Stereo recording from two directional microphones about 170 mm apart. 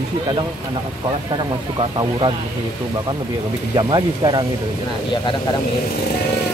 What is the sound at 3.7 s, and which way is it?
Speech, 25° right (ahead or behind).